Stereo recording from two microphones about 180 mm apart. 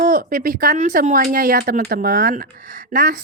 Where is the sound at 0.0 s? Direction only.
50° right (ahead or behind).